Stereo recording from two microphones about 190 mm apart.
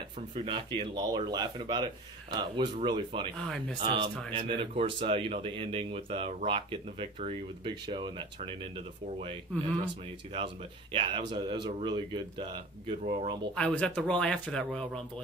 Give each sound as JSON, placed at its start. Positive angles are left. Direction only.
{"t": 0.3, "sound": "speech", "side_deg": -30}
{"t": 10.3, "sound": "speech", "side_deg": -30}
{"t": 13.0, "sound": "speech", "side_deg": -35}
{"t": 13.6, "sound": "speech", "side_deg": 5}